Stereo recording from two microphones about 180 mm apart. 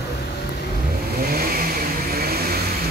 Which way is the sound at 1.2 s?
60° right (ahead or behind).